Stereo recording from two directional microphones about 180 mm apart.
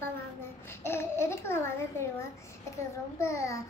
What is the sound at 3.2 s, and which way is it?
Speech, 15° left (ahead or behind).